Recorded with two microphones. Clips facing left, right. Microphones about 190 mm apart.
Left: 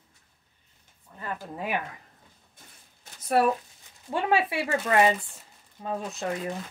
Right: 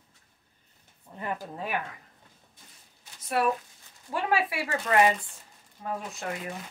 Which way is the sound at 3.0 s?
40° left (ahead or behind).